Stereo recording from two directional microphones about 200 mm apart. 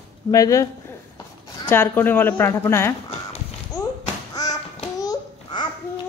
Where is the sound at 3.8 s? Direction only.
15° left (ahead or behind).